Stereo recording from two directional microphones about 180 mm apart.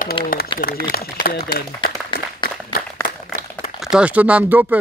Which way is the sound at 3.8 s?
5° right (ahead or behind).